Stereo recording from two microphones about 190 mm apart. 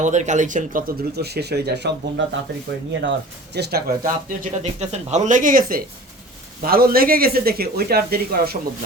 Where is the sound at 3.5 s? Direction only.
60° right (ahead or behind).